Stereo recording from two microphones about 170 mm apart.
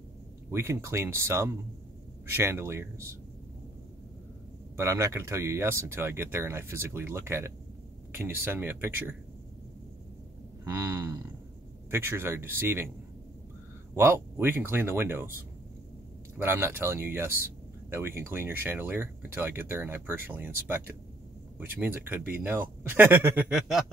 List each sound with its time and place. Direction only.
0.5 s speech: 15° right (ahead or behind)
4.7 s speech: 15° right (ahead or behind)
10.6 s speech: 15° right (ahead or behind)
13.9 s speech: 15° right (ahead or behind)
16.3 s speech: 15° right (ahead or behind)